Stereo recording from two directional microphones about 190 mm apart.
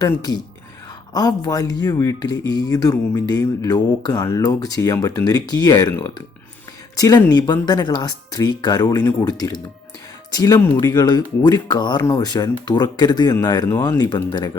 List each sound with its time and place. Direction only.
0.0 s speech: 20° left (ahead or behind)